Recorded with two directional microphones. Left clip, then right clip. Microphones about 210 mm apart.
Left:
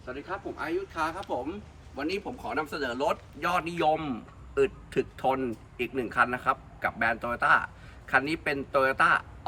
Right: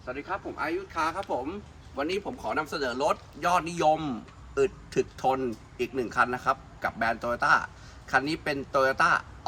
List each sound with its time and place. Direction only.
0.0 s speech: 10° right (ahead or behind)